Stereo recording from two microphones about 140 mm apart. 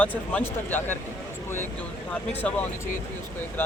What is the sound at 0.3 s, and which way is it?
Speech, 15° left (ahead or behind).